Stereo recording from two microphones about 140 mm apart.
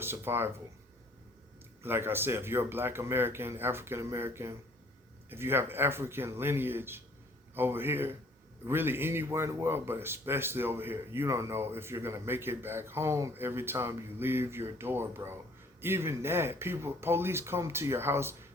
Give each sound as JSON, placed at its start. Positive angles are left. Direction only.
{"t": 0.0, "sound": "speech", "side_deg": -15}
{"t": 1.8, "sound": "speech", "side_deg": -15}